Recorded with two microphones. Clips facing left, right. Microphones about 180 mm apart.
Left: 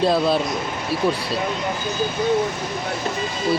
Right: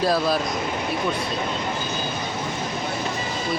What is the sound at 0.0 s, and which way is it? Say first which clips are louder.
Speech: left 3 dB; 25° left (ahead or behind).